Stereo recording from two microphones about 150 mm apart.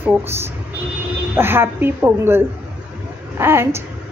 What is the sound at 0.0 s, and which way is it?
A woman's voice, 15° right (ahead or behind).